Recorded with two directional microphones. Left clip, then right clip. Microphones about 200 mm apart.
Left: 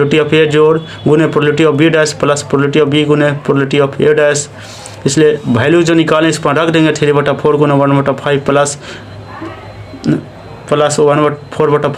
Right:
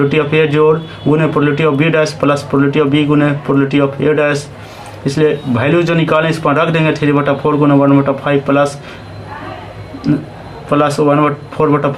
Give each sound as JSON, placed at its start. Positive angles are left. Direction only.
{"t": 0.1, "sound": "speech", "side_deg": 45}
{"t": 10.7, "sound": "speech", "side_deg": 45}